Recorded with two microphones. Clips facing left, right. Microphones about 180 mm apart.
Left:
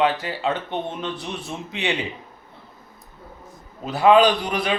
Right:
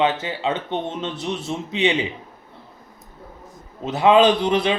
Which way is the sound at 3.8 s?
20° right (ahead or behind).